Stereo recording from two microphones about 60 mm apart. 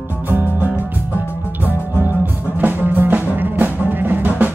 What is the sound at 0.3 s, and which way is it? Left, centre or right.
Music, right.